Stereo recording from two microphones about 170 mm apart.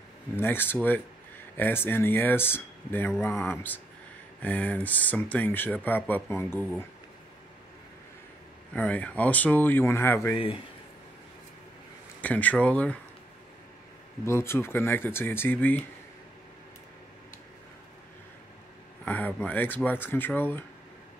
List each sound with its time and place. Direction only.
0.4 s speech: 10° left (ahead or behind)
8.7 s speech: 10° left (ahead or behind)
10.3 s speech: 30° left (ahead or behind)
12.2 s speech: 10° left (ahead or behind)
14.2 s speech: 15° left (ahead or behind)
19.0 s speech: 10° left (ahead or behind)